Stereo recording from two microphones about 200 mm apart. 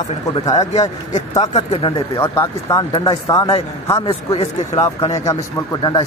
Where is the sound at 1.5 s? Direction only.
30° left (ahead or behind).